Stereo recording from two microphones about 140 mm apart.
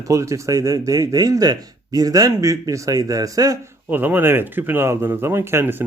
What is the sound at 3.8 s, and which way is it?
Speech, 15° right (ahead or behind).